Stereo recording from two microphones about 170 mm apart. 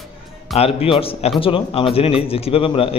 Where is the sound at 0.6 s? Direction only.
35° left (ahead or behind).